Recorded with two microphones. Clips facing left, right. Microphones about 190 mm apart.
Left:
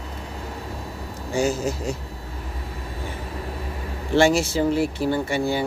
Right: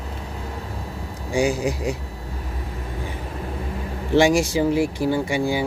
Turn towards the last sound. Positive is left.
turn(degrees=-10)  # may be behind; listen again after turning